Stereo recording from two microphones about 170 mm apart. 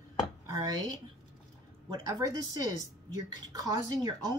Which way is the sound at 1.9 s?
25° right (ahead or behind).